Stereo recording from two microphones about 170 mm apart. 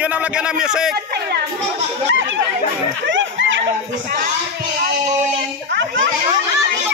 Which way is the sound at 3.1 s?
90° right.